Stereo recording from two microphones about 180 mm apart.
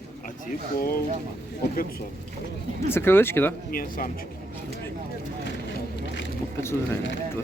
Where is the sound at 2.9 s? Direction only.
15° left (ahead or behind).